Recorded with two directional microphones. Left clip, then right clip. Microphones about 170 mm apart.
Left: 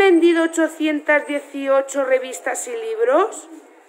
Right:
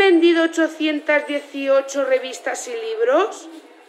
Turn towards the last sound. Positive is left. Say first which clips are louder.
# left 1 dB
turn(degrees=15)  # may be behind; listen again after turning